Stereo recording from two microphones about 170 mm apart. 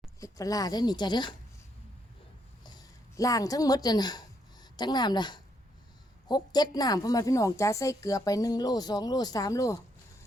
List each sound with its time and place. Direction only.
0.2 s a woman's voice: 20° left (ahead or behind)
2.6 s a woman's voice: 20° left (ahead or behind)